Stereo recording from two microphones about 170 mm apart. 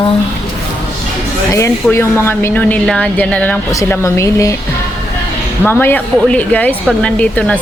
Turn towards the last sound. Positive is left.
turn(degrees=5)  # may be behind; listen again after turning